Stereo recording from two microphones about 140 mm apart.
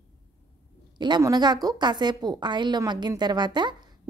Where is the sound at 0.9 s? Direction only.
30° right (ahead or behind).